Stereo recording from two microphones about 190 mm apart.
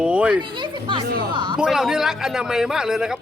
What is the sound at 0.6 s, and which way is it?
Speech, 25° right (ahead or behind).